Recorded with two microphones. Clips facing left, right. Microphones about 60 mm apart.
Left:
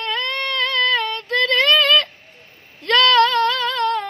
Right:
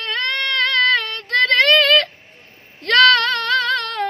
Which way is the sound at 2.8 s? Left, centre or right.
Right.